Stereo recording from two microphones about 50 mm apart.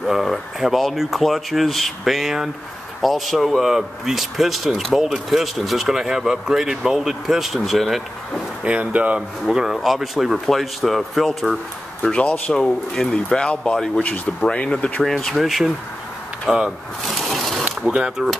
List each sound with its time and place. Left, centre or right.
0.0 s speech: centre
8.6 s speech: right
9.5 s speech: centre
12.0 s speech: left
15.0 s speech: centre
15.3 s speech: centre
17.0 s a sound: centre
18.2 s speech: right